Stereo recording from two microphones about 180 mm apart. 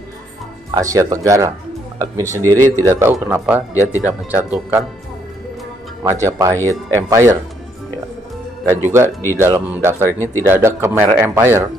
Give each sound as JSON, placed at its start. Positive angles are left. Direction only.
{"t": 0.7, "sound": "speech", "side_deg": -20}
{"t": 2.4, "sound": "speech", "side_deg": 10}
{"t": 2.7, "sound": "speech", "side_deg": -15}
{"t": 6.2, "sound": "speech", "side_deg": -15}
{"t": 8.6, "sound": "speech", "side_deg": -10}